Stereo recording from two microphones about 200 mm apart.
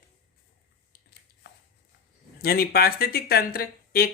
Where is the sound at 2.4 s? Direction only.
50° left (ahead or behind).